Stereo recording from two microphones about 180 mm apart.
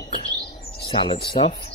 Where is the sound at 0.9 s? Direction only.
30° left (ahead or behind).